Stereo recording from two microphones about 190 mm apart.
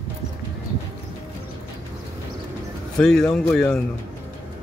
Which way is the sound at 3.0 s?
Centre (ahead or behind).